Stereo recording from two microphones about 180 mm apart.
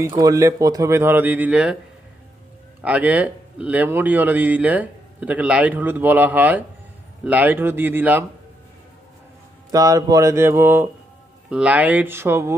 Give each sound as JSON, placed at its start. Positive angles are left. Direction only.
{"t": 0.0, "sound": "a man's voice", "side_deg": -20}
{"t": 2.8, "sound": "a man's voice", "side_deg": -10}
{"t": 9.7, "sound": "a man's voice", "side_deg": -20}